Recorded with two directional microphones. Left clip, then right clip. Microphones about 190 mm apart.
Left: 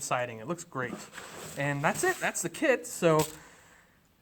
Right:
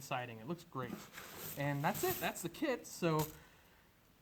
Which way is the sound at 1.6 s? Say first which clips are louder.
Left 9 dB; 10° left (ahead or behind).